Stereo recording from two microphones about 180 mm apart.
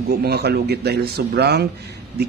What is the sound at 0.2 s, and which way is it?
A man's voice, 65° right (ahead or behind).